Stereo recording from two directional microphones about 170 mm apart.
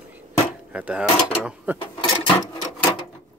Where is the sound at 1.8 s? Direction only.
30° left (ahead or behind).